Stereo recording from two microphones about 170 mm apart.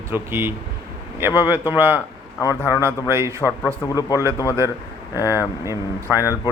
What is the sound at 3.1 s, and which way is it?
Speech, 15° right (ahead or behind).